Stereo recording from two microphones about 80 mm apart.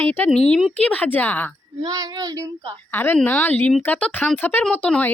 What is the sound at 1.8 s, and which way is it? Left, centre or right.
Child singing, right.